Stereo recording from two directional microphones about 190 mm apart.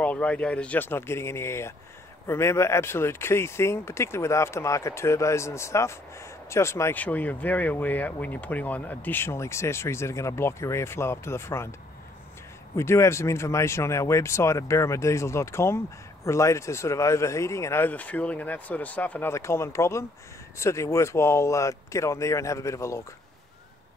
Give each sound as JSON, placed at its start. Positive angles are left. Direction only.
{"t": 0.0, "sound": "speech", "side_deg": 5}
{"t": 12.7, "sound": "speech", "side_deg": 15}